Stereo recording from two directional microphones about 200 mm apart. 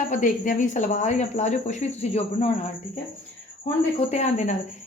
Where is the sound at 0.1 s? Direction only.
40° left (ahead or behind).